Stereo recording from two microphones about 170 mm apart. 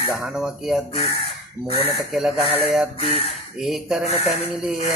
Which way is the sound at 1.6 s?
35° left (ahead or behind).